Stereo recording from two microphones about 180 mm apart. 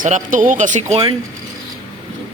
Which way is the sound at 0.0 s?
45° right (ahead or behind).